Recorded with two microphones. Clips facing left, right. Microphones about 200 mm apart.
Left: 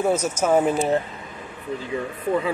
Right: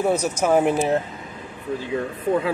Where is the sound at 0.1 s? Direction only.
65° right (ahead or behind).